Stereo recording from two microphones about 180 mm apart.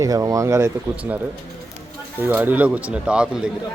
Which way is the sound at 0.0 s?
20° right (ahead or behind).